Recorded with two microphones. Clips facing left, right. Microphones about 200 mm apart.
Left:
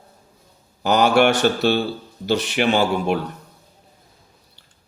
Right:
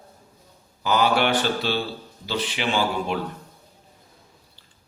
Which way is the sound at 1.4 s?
45° left (ahead or behind).